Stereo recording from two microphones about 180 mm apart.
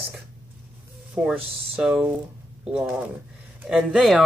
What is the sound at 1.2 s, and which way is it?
Speech, 5° right (ahead or behind).